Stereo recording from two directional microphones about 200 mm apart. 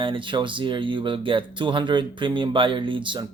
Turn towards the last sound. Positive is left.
turn(degrees=-25)  # may be behind; listen again after turning